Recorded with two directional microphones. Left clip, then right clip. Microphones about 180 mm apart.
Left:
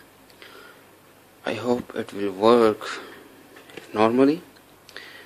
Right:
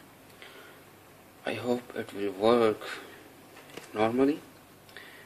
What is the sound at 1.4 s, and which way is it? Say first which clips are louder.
Speech: left 6 dB; 25° left (ahead or behind).